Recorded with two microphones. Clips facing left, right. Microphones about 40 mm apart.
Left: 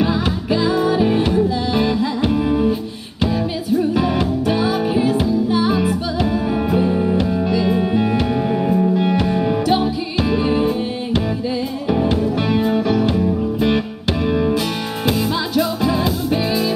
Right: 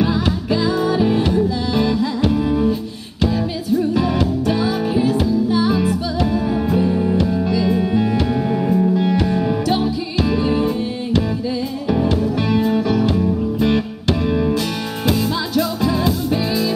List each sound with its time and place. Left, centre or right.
0.0 s music: centre
3.9 s music: left; by 8.9 s centre
8.9 s music: left
11.9 s music: centre
12.4 s music: left
12.7 s music: centre